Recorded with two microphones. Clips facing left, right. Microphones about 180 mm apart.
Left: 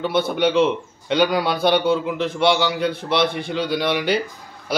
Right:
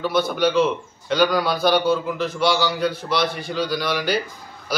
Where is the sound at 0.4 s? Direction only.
25° left (ahead or behind).